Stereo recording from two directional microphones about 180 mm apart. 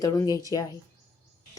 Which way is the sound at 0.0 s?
20° left (ahead or behind).